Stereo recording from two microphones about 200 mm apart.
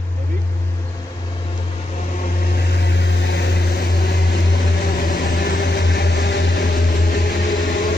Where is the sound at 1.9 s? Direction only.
40° left (ahead or behind).